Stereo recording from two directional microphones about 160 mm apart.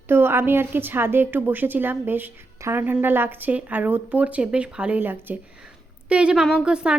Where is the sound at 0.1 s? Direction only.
15° right (ahead or behind).